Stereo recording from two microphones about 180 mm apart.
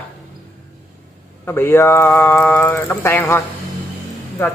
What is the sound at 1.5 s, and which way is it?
Speech, 15° left (ahead or behind).